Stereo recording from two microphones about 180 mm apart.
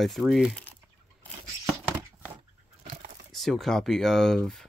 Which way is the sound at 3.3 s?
Centre (ahead or behind).